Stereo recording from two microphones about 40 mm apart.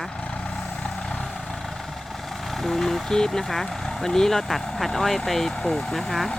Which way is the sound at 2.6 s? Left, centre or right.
Centre.